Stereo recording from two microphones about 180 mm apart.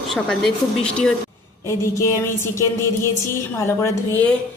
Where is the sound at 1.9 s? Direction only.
15° left (ahead or behind).